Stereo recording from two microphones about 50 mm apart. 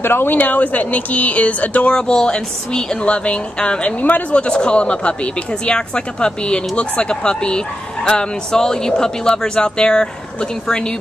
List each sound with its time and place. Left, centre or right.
0.0 s speech: left
2.0 s speech: centre
4.0 s speech: left